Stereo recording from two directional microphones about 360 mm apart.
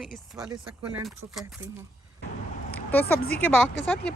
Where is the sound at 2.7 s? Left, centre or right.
Centre.